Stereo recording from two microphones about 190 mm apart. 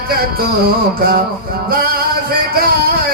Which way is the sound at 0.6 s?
50° right (ahead or behind).